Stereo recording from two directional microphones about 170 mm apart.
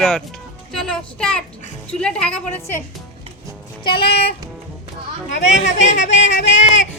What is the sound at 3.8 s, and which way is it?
Music, 30° left (ahead or behind).